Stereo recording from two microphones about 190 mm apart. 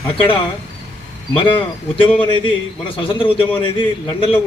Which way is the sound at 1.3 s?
25° left (ahead or behind).